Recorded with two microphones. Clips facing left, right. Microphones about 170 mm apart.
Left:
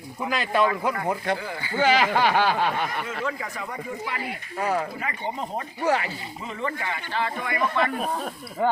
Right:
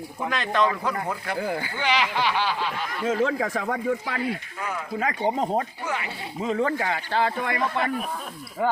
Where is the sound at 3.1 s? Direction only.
90° right.